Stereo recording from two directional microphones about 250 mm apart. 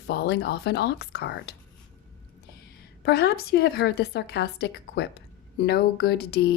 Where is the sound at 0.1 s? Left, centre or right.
Left.